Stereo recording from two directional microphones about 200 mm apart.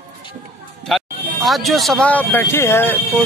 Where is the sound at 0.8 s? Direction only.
Centre (ahead or behind).